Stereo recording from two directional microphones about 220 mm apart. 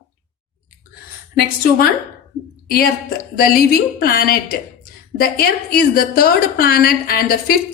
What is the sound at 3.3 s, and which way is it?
A woman's voice, 45° left (ahead or behind).